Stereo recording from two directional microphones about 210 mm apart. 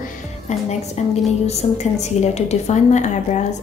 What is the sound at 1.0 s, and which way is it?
A woman's voice, 30° left (ahead or behind).